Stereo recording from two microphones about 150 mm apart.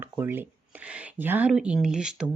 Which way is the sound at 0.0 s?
15° right (ahead or behind).